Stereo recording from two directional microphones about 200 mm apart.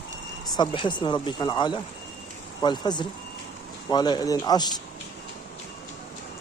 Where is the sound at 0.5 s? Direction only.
25° left (ahead or behind).